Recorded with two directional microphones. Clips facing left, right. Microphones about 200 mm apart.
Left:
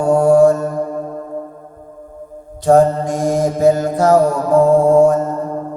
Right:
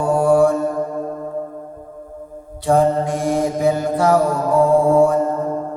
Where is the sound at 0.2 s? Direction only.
45° left (ahead or behind).